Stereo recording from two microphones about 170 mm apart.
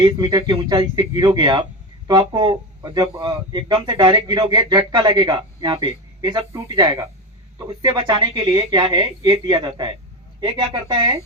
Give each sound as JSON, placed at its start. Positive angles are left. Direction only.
{"t": 0.0, "sound": "speech", "side_deg": -20}